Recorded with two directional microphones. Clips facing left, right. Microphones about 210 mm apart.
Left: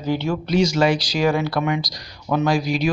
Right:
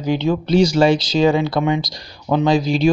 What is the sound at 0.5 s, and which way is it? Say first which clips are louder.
Speech: right 4 dB; 30° right (ahead or behind).